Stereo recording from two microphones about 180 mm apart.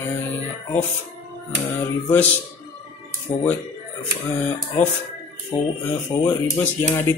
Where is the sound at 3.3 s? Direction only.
15° left (ahead or behind).